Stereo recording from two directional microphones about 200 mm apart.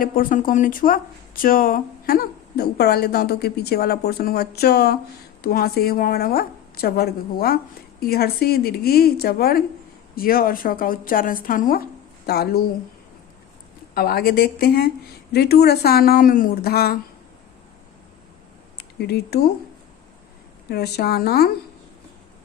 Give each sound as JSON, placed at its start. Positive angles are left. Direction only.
{"t": 0.0, "sound": "speech", "side_deg": 45}
{"t": 13.9, "sound": "speech", "side_deg": 50}
{"t": 18.9, "sound": "speech", "side_deg": 55}
{"t": 20.7, "sound": "speech", "side_deg": 55}